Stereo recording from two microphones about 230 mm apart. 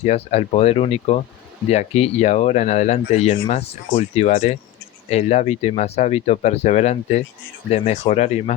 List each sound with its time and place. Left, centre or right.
0.0 s speech: left